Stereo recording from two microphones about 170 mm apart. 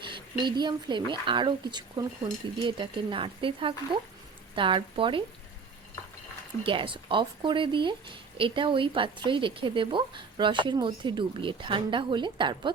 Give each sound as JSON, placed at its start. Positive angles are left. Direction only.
{"t": 0.0, "sound": "speech", "side_deg": -30}
{"t": 6.6, "sound": "speech", "side_deg": -30}